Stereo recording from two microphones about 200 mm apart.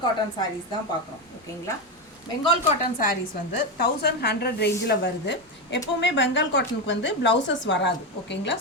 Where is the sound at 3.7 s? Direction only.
50° left (ahead or behind).